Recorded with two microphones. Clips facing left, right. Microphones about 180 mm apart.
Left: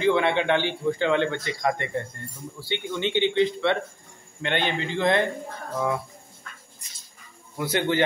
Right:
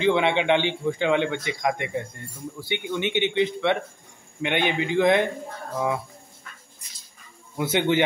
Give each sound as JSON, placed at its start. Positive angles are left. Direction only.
{"t": 0.0, "sound": "a man's voice", "side_deg": -20}
{"t": 7.5, "sound": "speech", "side_deg": -20}